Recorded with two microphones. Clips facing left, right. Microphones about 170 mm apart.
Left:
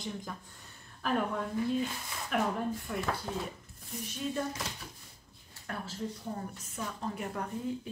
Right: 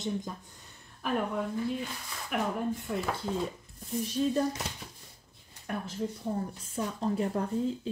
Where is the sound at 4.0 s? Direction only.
30° right (ahead or behind).